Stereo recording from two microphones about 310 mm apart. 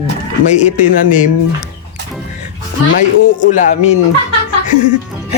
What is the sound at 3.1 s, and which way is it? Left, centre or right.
Speech, left.